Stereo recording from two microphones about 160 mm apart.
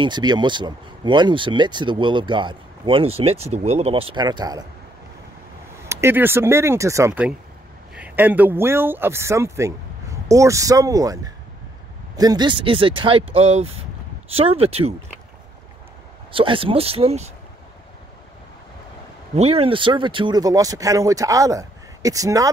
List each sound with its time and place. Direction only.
0.0 s speech: 25° right (ahead or behind)
5.9 s speech: 15° right (ahead or behind); by 15.0 s 40° right (ahead or behind)
16.3 s speech: 35° right (ahead or behind)
19.3 s speech: 40° right (ahead or behind); by 22.5 s 20° right (ahead or behind)